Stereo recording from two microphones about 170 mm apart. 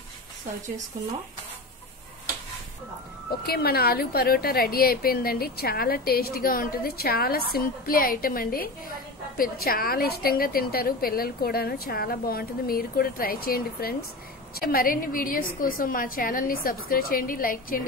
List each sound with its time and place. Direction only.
3.3 s a woman's voice: 65° left (ahead or behind)